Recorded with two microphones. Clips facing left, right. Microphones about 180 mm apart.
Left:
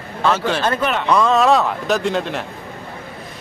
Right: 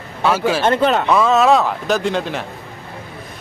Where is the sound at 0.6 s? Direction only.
30° right (ahead or behind).